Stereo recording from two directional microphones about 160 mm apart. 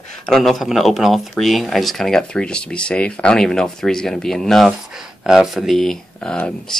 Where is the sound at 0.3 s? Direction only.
Centre (ahead or behind).